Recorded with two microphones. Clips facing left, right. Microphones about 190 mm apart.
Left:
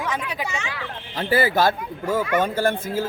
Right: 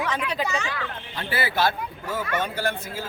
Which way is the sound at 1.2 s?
40° left (ahead or behind).